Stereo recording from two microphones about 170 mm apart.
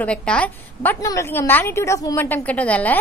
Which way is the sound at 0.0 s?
5° left (ahead or behind).